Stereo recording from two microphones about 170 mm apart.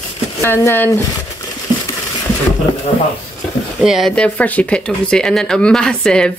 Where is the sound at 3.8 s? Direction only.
Centre (ahead or behind).